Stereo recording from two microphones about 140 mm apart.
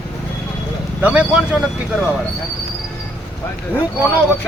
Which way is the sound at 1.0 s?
10° right (ahead or behind).